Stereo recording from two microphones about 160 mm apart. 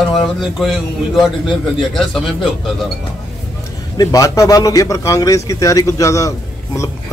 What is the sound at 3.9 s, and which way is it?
A man's voice, 20° left (ahead or behind).